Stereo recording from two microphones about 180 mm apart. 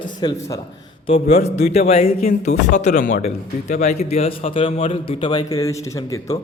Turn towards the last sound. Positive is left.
turn(degrees=15)  # may be behind; listen again after turning